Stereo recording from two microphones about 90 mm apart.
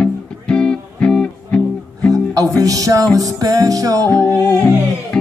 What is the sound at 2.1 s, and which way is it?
Music, 40° right (ahead or behind).